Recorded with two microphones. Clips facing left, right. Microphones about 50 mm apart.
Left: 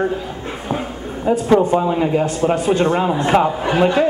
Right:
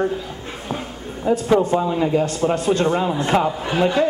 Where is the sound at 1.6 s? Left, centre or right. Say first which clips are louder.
Left 3 dB; centre.